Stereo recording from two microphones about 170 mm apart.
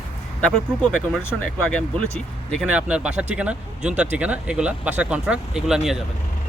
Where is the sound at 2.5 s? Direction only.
5° right (ahead or behind).